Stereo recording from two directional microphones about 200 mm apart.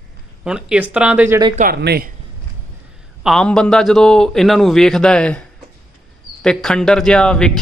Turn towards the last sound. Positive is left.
turn(degrees=5)  # may be behind; listen again after turning